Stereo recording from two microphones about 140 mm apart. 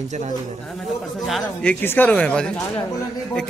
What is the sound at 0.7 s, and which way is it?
Speech, centre (ahead or behind).